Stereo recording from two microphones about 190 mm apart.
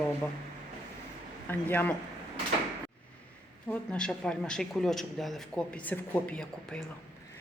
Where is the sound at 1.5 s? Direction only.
10° left (ahead or behind).